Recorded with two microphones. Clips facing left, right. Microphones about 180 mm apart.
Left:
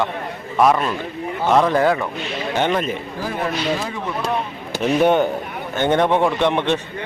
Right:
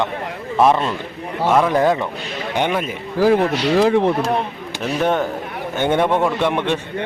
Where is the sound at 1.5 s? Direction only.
5° right (ahead or behind).